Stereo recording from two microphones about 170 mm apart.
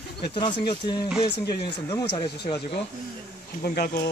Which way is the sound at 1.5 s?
75° left (ahead or behind).